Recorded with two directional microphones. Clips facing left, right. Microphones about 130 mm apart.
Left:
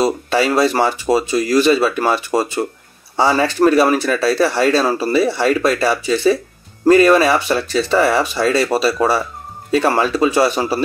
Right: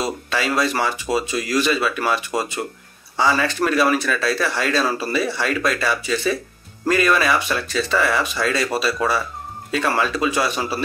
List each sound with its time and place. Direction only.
0.0 s speech: 35° left (ahead or behind)